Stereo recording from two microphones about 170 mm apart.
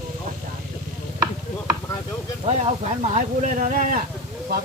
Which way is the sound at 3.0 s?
45° right (ahead or behind).